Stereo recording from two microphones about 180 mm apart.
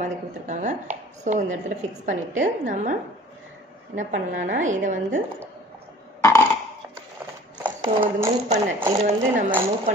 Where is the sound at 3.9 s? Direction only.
45° right (ahead or behind).